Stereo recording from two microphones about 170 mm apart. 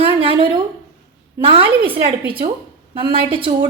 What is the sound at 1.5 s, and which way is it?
A woman's voice, 35° right (ahead or behind).